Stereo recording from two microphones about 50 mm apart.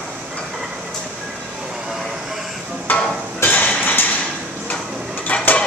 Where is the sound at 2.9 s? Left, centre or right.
Left.